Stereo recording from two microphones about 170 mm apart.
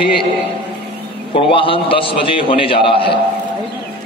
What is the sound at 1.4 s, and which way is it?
A man's voice, 30° left (ahead or behind).